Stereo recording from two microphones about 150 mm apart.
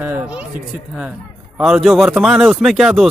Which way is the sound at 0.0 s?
10° right (ahead or behind).